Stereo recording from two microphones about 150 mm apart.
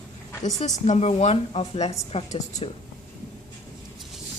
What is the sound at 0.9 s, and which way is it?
A woman's voice, 45° left (ahead or behind).